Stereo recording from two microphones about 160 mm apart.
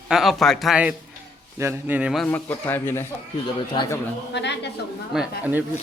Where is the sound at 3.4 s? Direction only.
30° left (ahead or behind).